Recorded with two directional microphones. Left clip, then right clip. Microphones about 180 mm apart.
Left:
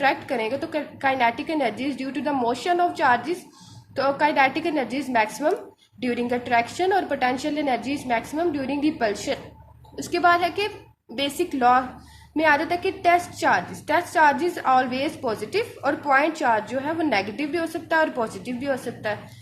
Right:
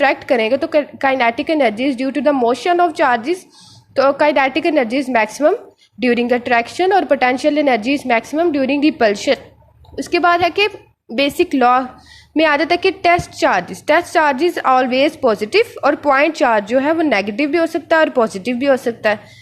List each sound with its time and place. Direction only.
0.0 s a woman's voice: 35° right (ahead or behind)